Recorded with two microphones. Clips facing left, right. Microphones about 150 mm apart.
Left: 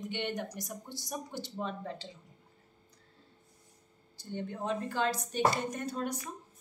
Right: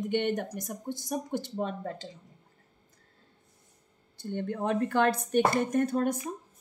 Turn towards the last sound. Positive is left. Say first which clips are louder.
# right 9 dB
turn(degrees=-55)  # may be behind; listen again after turning